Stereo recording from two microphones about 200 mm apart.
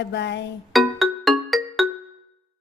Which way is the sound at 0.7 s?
Centre (ahead or behind).